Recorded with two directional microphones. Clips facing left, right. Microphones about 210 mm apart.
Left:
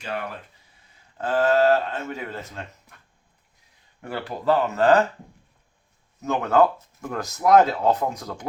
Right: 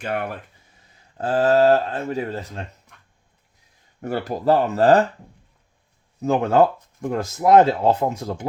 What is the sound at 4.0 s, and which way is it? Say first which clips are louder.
Speech: right 5 dB; 40° right (ahead or behind).